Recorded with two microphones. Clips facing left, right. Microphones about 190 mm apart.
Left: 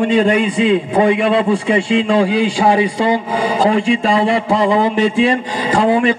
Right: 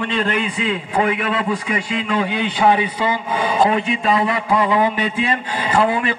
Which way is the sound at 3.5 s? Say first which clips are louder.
Left 4 dB; 80° left.